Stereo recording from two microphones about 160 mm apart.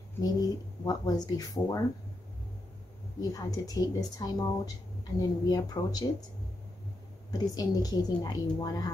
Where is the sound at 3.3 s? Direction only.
20° left (ahead or behind).